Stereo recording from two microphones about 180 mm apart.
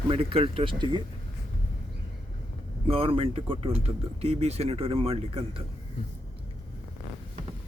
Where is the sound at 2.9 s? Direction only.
30° right (ahead or behind).